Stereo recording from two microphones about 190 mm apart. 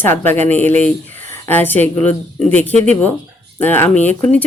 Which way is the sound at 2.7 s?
35° right (ahead or behind).